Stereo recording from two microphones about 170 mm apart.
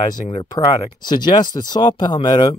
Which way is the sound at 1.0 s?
25° left (ahead or behind).